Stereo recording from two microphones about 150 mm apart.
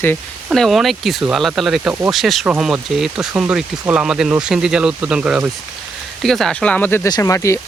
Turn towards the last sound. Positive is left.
turn(degrees=20)  # may be behind; listen again after turning